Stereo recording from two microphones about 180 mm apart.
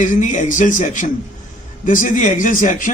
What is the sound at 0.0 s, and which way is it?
A man's voice, 45° left (ahead or behind).